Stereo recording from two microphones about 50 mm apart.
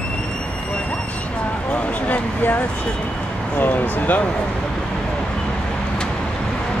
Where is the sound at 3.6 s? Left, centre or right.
Left.